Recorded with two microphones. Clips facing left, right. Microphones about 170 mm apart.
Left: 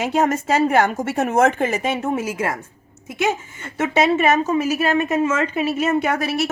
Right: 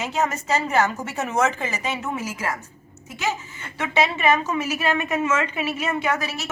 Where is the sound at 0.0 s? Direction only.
55° left (ahead or behind).